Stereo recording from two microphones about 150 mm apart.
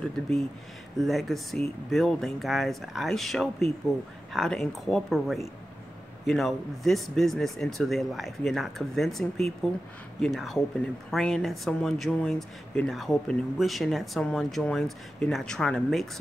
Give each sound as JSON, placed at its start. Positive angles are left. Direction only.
{"t": 0.1, "sound": "speech", "side_deg": 5}